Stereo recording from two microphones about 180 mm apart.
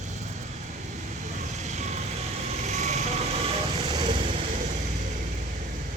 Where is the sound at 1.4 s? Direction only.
40° right (ahead or behind).